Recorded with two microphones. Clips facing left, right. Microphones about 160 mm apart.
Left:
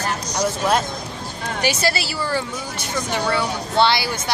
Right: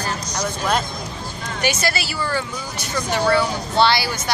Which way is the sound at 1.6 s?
30° left (ahead or behind).